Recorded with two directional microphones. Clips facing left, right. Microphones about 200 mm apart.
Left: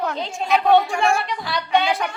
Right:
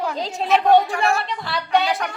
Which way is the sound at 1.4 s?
Centre (ahead or behind).